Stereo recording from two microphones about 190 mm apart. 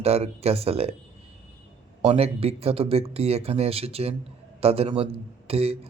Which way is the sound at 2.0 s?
35° right (ahead or behind).